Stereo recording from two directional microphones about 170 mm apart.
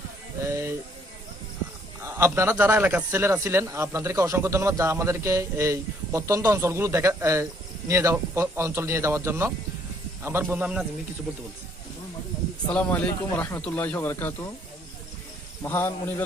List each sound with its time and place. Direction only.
0.4 s a sound: 15° right (ahead or behind)
2.0 s a man's voice: 15° right (ahead or behind)
12.7 s speech: 10° left (ahead or behind)
15.6 s speech: 10° left (ahead or behind)